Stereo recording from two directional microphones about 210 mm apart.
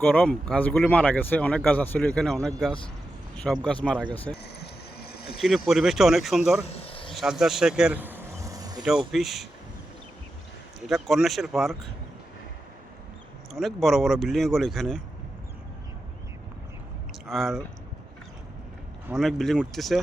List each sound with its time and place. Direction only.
0.0 s speech: 10° left (ahead or behind)
4.6 s a sound: 50° left (ahead or behind)
5.4 s speech: centre (ahead or behind)
6.7 s a sound: 30° left (ahead or behind)
7.1 s vehicle: centre (ahead or behind); by 8.8 s 15° right (ahead or behind)
9.1 s speech: centre (ahead or behind)
10.8 s speech: centre (ahead or behind)
13.5 s speech: centre (ahead or behind)
17.2 s speech: centre (ahead or behind)
19.0 s speech: centre (ahead or behind)